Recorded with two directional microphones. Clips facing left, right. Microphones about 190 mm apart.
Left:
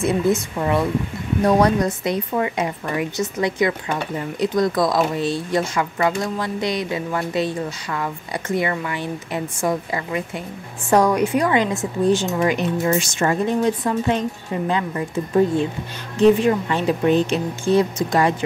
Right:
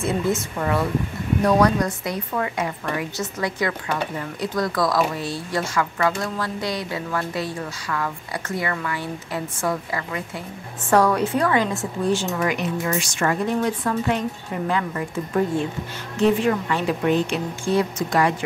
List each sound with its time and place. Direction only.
0.0 s a woman's voice: 20° left (ahead or behind)